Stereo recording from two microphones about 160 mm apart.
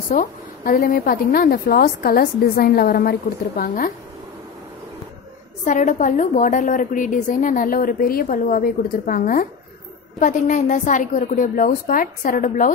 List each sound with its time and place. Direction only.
0.1 s a woman's voice: 65° left (ahead or behind)
5.7 s a woman's voice: 50° left (ahead or behind)